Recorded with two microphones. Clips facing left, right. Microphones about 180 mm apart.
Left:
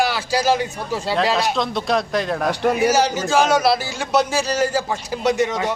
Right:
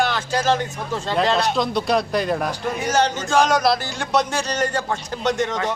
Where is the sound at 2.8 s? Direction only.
5° left (ahead or behind).